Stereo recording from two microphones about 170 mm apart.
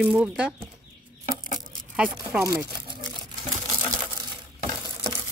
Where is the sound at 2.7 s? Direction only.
25° right (ahead or behind).